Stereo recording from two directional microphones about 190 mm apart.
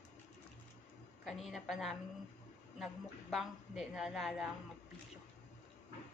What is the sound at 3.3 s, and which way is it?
A woman's voice, centre (ahead or behind).